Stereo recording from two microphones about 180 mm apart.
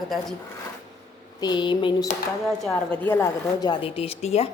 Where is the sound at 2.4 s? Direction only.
Centre (ahead or behind); by 4.5 s 35° left (ahead or behind).